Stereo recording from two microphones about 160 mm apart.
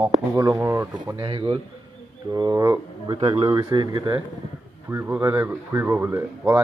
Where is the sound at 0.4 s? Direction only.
20° right (ahead or behind).